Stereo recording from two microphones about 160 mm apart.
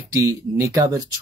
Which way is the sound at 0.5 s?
20° right (ahead or behind).